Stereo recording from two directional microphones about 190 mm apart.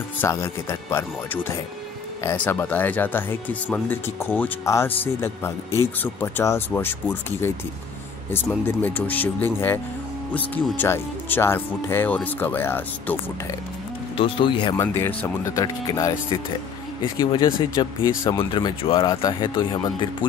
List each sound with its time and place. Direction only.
0.2 s speech: 15° left (ahead or behind)
8.6 s speech: 10° left (ahead or behind)
14.1 s speech: 25° left (ahead or behind)